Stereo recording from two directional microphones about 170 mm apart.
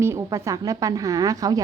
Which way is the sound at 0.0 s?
15° right (ahead or behind).